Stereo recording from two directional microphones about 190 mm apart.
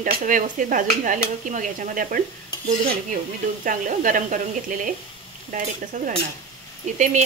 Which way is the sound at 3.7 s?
45° right (ahead or behind).